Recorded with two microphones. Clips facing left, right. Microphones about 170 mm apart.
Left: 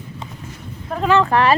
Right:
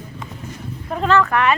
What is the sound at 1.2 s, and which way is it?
Speech, 30° left (ahead or behind).